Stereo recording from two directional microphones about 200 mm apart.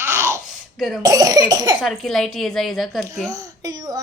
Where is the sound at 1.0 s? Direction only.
20° right (ahead or behind).